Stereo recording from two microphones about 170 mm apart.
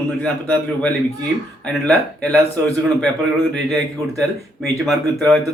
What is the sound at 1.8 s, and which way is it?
Speech, 5° left (ahead or behind).